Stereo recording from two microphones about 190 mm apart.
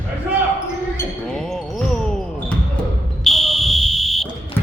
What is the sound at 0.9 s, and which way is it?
Basketball bounce, 5° left (ahead or behind).